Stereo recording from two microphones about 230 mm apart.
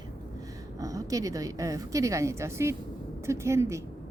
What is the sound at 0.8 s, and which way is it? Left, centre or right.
Speech, centre.